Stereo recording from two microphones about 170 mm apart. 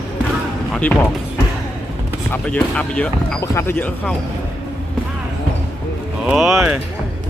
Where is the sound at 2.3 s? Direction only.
5° left (ahead or behind).